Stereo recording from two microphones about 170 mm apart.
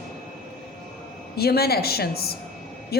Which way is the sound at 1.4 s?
65° left (ahead or behind).